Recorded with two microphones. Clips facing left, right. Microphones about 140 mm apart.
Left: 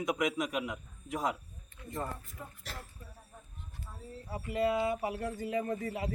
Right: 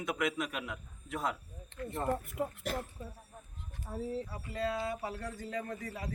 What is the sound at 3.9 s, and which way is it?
Speech, 55° right (ahead or behind).